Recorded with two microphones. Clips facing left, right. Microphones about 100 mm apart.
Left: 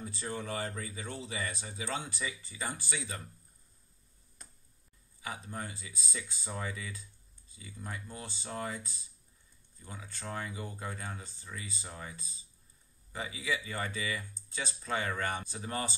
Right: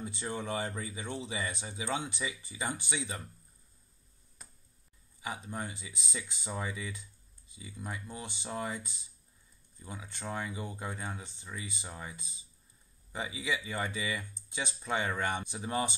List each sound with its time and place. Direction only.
0.0 s speech: 20° right (ahead or behind)
4.4 s finger snapping: 5° right (ahead or behind)
5.2 s speech: 15° right (ahead or behind)
9.8 s speech: 20° right (ahead or behind)
13.1 s speech: 15° right (ahead or behind)